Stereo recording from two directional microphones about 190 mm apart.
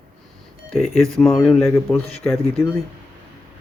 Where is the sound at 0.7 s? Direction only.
Centre (ahead or behind).